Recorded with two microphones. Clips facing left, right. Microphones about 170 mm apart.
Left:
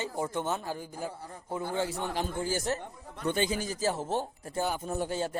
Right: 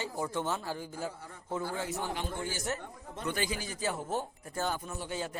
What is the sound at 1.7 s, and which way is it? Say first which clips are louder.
A man's voice: left 4 dB; 30° left (ahead or behind).